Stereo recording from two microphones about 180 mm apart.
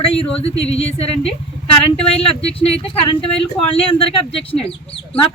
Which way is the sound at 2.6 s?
30° left (ahead or behind).